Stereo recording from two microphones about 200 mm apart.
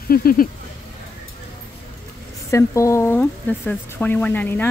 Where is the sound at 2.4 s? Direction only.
15° left (ahead or behind).